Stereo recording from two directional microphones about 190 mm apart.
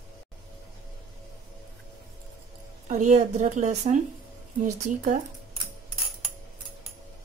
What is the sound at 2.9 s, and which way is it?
A woman's voice, 40° right (ahead or behind).